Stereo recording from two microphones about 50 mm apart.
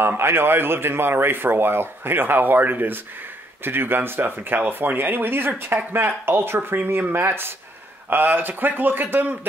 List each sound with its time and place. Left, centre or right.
0.2 s speech: right